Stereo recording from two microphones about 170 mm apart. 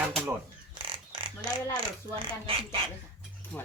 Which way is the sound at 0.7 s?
30° right (ahead or behind).